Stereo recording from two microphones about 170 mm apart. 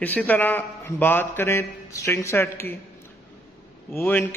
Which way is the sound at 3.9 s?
10° left (ahead or behind).